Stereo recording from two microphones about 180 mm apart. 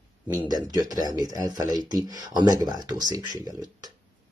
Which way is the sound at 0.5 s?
20° right (ahead or behind).